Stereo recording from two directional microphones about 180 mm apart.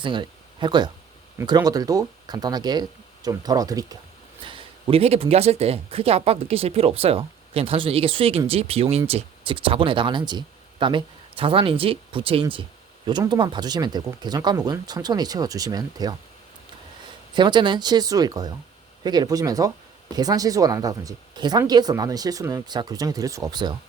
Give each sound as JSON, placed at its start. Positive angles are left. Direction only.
{"t": 0.0, "sound": "speech", "side_deg": -25}
{"t": 17.3, "sound": "speech", "side_deg": -25}